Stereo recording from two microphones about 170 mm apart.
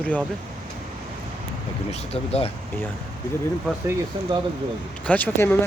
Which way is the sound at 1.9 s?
35° left (ahead or behind).